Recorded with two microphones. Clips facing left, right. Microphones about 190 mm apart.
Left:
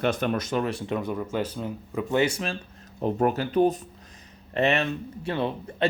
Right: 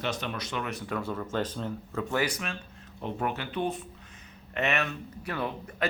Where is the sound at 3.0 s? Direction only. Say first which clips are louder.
Left 8 dB; 40° left (ahead or behind).